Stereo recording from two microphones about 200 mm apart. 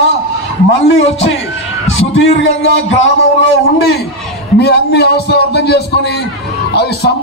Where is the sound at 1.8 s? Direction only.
75° left (ahead or behind).